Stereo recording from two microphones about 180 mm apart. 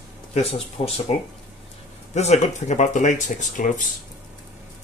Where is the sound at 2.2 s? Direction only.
40° left (ahead or behind).